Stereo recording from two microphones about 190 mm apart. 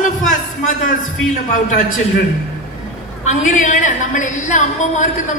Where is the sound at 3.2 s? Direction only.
40° left (ahead or behind).